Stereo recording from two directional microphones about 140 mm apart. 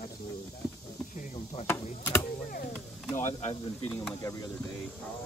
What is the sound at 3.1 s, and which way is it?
Speech, 55° left (ahead or behind).